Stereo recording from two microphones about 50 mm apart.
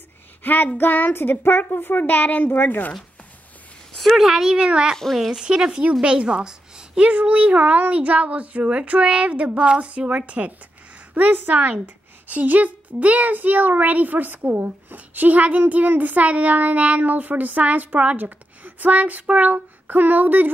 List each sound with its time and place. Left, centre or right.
0.4 s speech: left
3.9 s a sound: centre
4.2 s speech: centre
5.1 s speech: centre
5.4 s speech: centre
7.0 s speech: right
11.1 s speech: right